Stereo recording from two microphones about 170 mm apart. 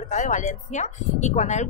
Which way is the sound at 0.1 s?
45° left (ahead or behind).